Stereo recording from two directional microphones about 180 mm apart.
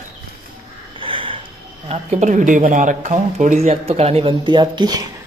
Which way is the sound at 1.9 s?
40° right (ahead or behind).